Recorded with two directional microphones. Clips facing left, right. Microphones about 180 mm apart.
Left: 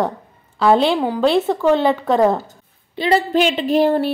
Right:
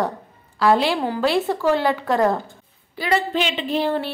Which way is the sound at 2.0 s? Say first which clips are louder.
Left 4 dB; centre (ahead or behind).